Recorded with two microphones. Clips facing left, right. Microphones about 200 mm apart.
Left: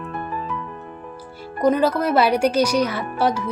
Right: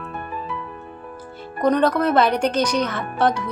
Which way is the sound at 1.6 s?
5° left (ahead or behind).